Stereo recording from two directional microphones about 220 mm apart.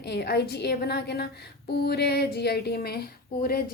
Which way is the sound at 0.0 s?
50° left (ahead or behind).